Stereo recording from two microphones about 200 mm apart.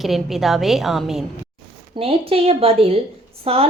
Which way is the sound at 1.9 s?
30° right (ahead or behind).